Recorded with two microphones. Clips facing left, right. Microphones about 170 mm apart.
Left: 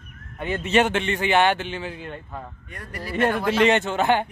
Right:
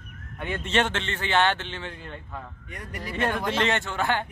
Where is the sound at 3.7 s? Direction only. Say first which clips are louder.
Left 6 dB; 20° left (ahead or behind).